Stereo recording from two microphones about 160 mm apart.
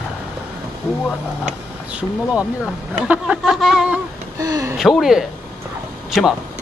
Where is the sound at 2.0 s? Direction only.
5° right (ahead or behind).